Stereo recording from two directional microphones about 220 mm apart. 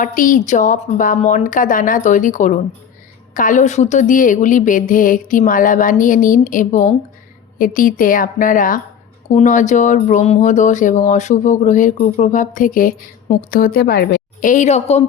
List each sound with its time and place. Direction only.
0.0 s speech: 40° left (ahead or behind)